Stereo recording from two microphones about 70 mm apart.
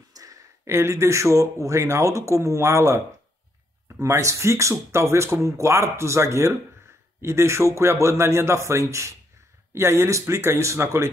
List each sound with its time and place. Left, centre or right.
0.1 s a sound: right
0.7 s speech: right
4.0 s speech: right